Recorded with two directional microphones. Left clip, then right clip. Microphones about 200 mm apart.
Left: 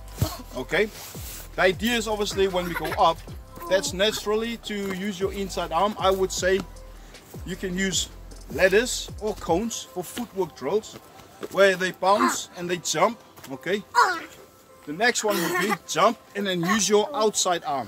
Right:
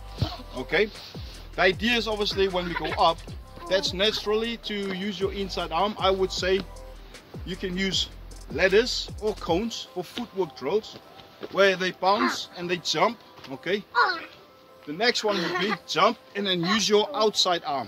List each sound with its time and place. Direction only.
0.6 s speech: 5° left (ahead or behind)
2.6 s speech: 45° left (ahead or behind)
3.6 s speech: 5° left (ahead or behind)
13.9 s music: 40° left (ahead or behind)
14.9 s speech: 5° left (ahead or behind)
15.3 s speech: 40° left (ahead or behind)
15.9 s speech: 10° left (ahead or behind)